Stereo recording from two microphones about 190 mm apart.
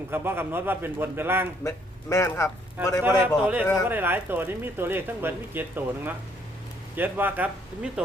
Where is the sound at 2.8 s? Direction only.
10° right (ahead or behind).